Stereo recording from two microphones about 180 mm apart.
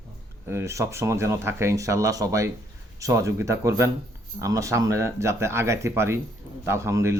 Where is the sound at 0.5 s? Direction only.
15° right (ahead or behind).